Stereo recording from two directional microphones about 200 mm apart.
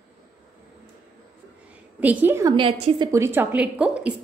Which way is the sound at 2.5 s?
25° right (ahead or behind).